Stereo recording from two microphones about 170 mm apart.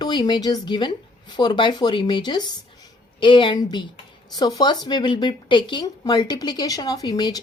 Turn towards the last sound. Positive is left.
turn(degrees=25)  # may be behind; listen again after turning